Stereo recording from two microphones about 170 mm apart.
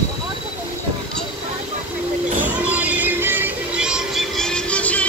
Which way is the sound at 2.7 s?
10° right (ahead or behind).